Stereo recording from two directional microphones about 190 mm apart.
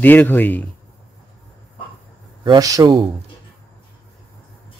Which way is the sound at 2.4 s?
20° right (ahead or behind).